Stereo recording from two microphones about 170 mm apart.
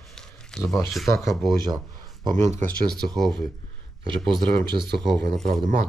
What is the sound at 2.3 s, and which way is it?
Speech, 45° right (ahead or behind).